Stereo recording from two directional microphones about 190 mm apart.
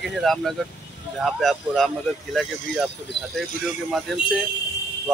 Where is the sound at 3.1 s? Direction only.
65° left (ahead or behind).